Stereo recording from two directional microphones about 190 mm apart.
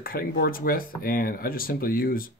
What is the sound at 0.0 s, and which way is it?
Speech, 50° left (ahead or behind).